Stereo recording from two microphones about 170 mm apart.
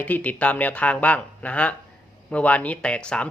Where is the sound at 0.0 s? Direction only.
10° left (ahead or behind).